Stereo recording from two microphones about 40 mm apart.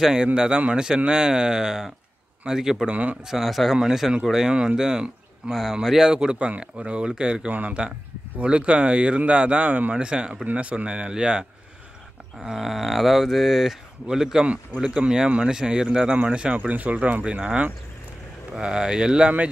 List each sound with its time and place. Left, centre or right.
0.0 s speech: centre
2.9 s speech: right
3.3 s speech: centre
3.7 s speech: centre
6.1 s speech: right
9.9 s speech: right
10.4 s speech: right
12.4 s speech: centre
16.5 s speech: right
17.2 s speech: right
18.6 s speech: centre